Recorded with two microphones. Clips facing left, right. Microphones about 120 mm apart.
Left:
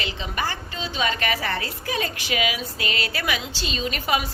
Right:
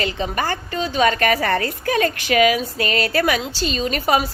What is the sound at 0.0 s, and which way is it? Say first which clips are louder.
A woman's voice: right 6 dB; 50° right (ahead or behind).